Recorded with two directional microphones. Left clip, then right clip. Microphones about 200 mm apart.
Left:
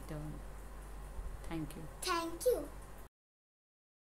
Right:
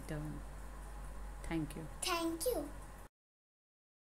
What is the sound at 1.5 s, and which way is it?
Speech, 10° right (ahead or behind).